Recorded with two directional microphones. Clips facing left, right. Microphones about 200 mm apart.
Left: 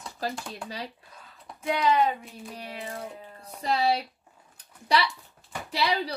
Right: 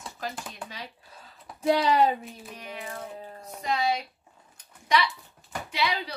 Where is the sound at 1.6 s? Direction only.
35° right (ahead or behind).